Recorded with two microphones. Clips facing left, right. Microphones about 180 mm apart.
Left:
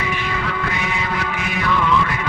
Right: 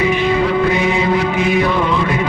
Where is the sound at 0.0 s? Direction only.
20° right (ahead or behind).